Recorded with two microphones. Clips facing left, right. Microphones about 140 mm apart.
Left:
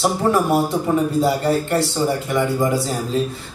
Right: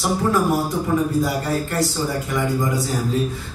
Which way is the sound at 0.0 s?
25° left (ahead or behind).